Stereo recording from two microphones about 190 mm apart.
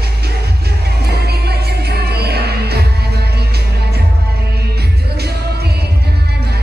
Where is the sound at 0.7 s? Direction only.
60° right (ahead or behind).